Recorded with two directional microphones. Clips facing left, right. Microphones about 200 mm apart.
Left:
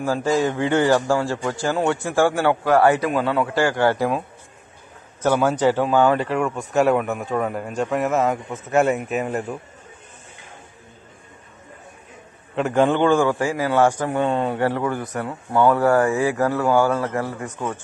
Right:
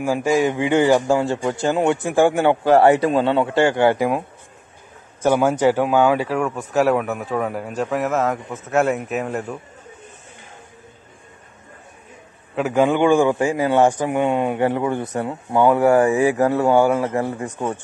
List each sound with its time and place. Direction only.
0.0 s a man's voice: 15° right (ahead or behind)
5.2 s speech: 15° right (ahead or behind)
12.5 s a man's voice: 5° right (ahead or behind); by 17.5 s 20° right (ahead or behind)